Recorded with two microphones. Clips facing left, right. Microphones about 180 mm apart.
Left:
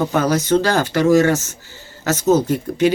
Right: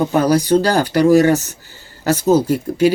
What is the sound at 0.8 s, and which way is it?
Speech, 15° right (ahead or behind).